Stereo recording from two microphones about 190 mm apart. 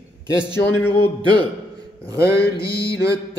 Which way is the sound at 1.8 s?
15° right (ahead or behind).